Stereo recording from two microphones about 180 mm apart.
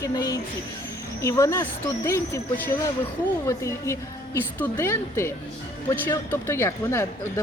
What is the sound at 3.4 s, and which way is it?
Speech, 15° left (ahead or behind).